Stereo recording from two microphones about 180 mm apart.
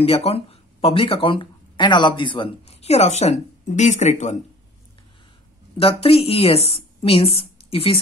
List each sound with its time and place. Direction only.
0.0 s speech: 30° left (ahead or behind)
5.8 s a woman's voice: 30° left (ahead or behind)